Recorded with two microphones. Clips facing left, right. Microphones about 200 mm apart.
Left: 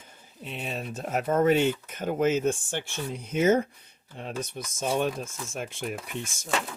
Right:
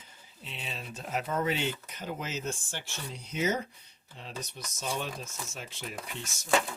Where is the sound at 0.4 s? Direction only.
50° left (ahead or behind).